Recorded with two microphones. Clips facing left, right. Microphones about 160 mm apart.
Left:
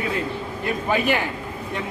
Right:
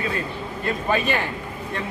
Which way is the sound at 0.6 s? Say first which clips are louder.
Left 1 dB; 15° left (ahead or behind).